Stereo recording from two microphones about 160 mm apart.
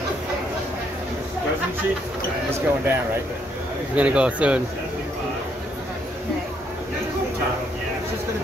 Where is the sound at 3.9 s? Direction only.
10° right (ahead or behind).